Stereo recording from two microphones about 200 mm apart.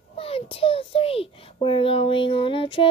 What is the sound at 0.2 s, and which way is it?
A child's voice, 30° left (ahead or behind).